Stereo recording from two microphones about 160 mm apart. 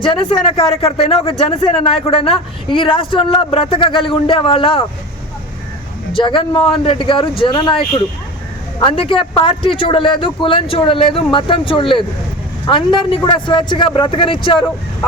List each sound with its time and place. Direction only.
0.0 s speech: 30° left (ahead or behind)
6.1 s speech: 30° left (ahead or behind)
8.8 s speech: 35° left (ahead or behind)